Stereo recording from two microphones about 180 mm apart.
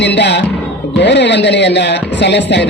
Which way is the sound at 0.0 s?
75° left (ahead or behind).